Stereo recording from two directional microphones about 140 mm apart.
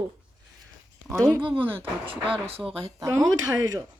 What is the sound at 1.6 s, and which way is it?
Speech, 15° right (ahead or behind).